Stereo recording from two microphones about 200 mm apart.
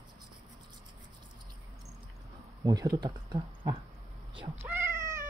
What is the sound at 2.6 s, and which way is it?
Speech, 20° right (ahead or behind).